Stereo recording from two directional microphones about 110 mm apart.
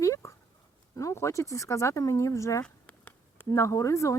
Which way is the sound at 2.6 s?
15° left (ahead or behind).